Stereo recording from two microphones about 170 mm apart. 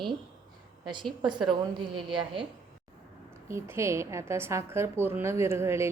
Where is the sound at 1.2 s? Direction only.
25° right (ahead or behind).